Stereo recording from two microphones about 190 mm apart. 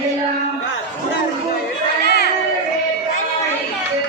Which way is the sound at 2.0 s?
60° left (ahead or behind).